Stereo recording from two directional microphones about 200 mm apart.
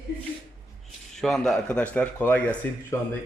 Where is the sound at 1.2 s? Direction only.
Centre (ahead or behind).